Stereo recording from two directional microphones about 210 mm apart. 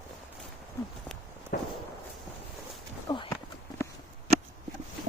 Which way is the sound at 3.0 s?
25° left (ahead or behind).